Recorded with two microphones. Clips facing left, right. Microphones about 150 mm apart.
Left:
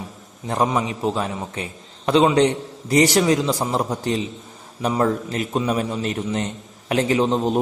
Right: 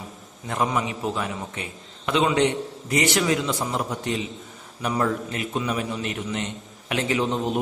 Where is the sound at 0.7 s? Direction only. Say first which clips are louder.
Left 4 dB; 30° left (ahead or behind).